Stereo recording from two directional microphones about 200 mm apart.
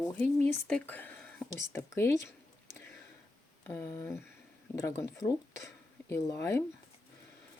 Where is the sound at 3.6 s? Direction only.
15° left (ahead or behind).